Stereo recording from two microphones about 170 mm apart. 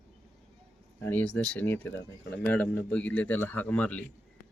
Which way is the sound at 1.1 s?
10° left (ahead or behind).